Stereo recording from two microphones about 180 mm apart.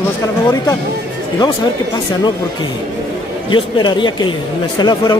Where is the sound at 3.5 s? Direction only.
25° left (ahead or behind).